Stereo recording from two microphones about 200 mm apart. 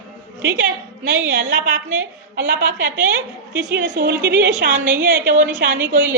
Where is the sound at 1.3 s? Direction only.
55° right (ahead or behind).